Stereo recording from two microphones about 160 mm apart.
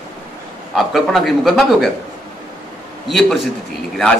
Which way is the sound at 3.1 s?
Centre (ahead or behind).